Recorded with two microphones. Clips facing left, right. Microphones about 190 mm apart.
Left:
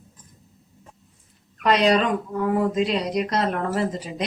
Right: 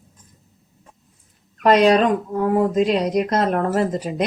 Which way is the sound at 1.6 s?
45° right (ahead or behind).